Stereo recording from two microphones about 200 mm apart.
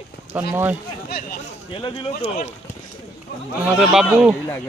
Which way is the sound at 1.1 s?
50° left (ahead or behind).